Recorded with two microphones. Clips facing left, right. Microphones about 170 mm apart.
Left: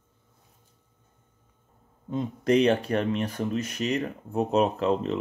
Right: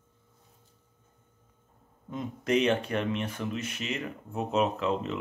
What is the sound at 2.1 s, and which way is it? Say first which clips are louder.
Speech: left 5 dB; 30° left (ahead or behind).